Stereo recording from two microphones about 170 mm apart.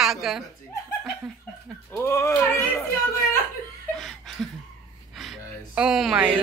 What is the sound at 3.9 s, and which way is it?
Laughter, centre (ahead or behind).